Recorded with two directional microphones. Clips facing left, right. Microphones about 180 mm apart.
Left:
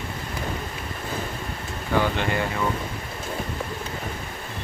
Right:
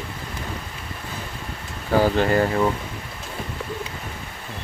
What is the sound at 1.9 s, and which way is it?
Speech, 40° right (ahead or behind).